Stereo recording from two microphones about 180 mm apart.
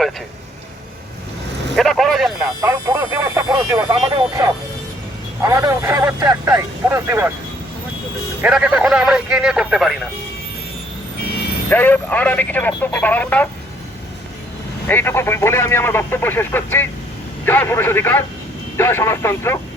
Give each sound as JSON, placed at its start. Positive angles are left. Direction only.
{"t": 1.7, "sound": "vehicle", "side_deg": 0}
{"t": 2.6, "sound": "a sound", "side_deg": -15}
{"t": 5.4, "sound": "speech", "side_deg": -15}
{"t": 8.4, "sound": "a man's voice", "side_deg": -5}
{"t": 11.7, "sound": "speech", "side_deg": 10}
{"t": 14.8, "sound": "speech", "side_deg": 10}